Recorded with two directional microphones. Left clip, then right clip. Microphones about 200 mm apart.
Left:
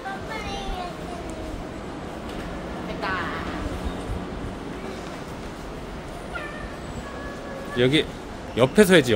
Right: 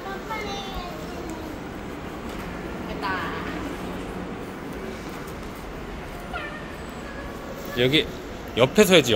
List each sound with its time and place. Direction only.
7.7 s a man's voice: 30° left (ahead or behind)